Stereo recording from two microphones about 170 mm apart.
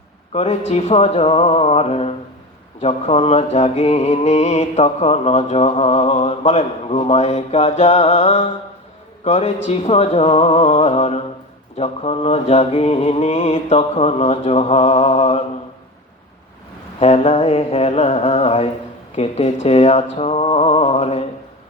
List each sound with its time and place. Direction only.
0.3 s music: 40° left (ahead or behind)
17.0 s music: 40° left (ahead or behind)